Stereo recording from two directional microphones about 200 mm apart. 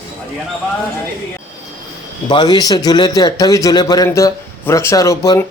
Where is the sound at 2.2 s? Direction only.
25° left (ahead or behind).